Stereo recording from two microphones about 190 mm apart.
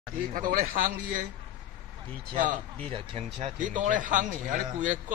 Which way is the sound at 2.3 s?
40° right (ahead or behind).